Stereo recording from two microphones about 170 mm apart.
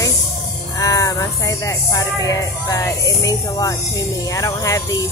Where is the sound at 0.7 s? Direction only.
20° left (ahead or behind).